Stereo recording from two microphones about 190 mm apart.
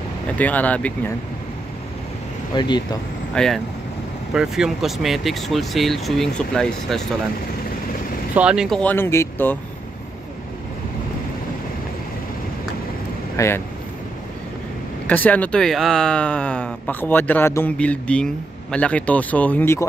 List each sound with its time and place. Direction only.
0.4 s speech: 10° left (ahead or behind)
2.5 s speech: 25° left (ahead or behind)
3.3 s speech: centre (ahead or behind)
8.4 s speech: 5° right (ahead or behind); by 9.6 s 10° left (ahead or behind)
13.4 s speech: 15° left (ahead or behind)
15.0 s speech: 10° left (ahead or behind)